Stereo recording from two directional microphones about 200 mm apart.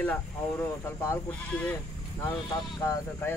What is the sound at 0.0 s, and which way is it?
Speech, 10° left (ahead or behind).